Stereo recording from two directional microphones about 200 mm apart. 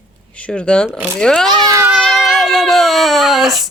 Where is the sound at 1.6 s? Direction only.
20° right (ahead or behind).